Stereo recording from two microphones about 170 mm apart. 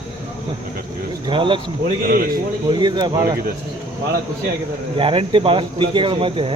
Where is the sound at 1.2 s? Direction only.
30° right (ahead or behind).